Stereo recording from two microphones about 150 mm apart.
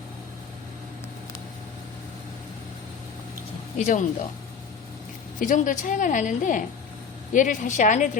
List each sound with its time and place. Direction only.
3.8 s a woman's voice: 55° left (ahead or behind)
5.4 s a woman's voice: 60° left (ahead or behind)